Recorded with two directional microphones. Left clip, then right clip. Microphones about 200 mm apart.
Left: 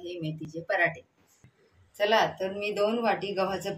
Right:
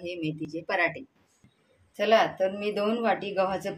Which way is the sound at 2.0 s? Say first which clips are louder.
Right 2 dB; 40° right (ahead or behind).